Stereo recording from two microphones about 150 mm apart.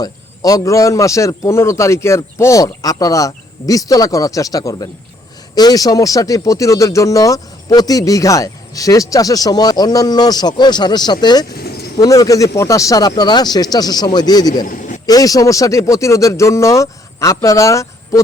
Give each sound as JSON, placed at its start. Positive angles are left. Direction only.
{"t": 0.0, "sound": "speech", "side_deg": 25}
{"t": 11.5, "sound": "vehicle", "side_deg": 90}
{"t": 11.9, "sound": "speech", "side_deg": 25}
{"t": 14.6, "sound": "a man's voice", "side_deg": 65}
{"t": 15.0, "sound": "speech", "side_deg": 25}